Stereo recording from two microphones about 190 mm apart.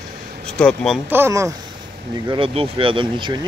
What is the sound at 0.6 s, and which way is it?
Speech, 5° left (ahead or behind).